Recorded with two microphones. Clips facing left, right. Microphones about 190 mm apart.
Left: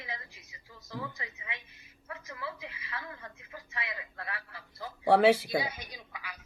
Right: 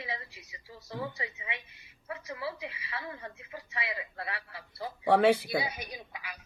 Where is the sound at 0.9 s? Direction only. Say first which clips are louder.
Right 3 dB; 35° right (ahead or behind).